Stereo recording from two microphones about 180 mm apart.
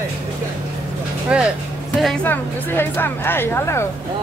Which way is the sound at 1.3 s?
5° right (ahead or behind).